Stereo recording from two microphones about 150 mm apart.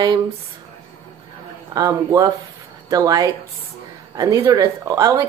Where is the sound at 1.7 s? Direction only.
25° right (ahead or behind).